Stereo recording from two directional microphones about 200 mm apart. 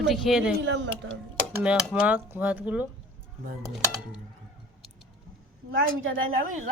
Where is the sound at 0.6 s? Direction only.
65° right (ahead or behind).